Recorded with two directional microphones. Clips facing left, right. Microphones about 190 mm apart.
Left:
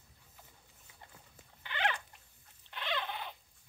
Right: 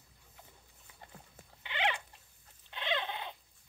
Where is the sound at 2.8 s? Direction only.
20° right (ahead or behind).